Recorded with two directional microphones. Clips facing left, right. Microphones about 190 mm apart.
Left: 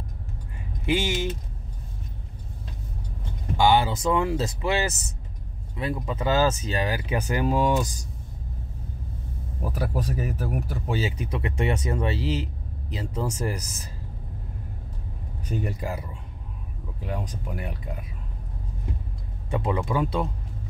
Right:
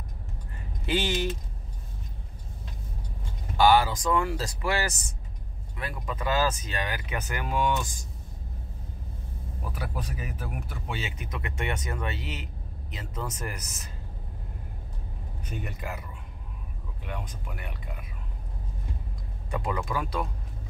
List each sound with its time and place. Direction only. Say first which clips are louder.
0.8 s speech: left 2 dB; 10° left (ahead or behind)
3.5 s speech: even; 20° left (ahead or behind); by 8.0 s 35° left (ahead or behind)
9.7 s speech: left 7 dB; 40° left (ahead or behind)
15.5 s speech: left 7 dB; 35° left (ahead or behind)
19.5 s speech: left 5 dB; 25° left (ahead or behind)